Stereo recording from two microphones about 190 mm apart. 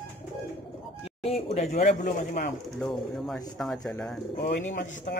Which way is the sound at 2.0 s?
45° left (ahead or behind).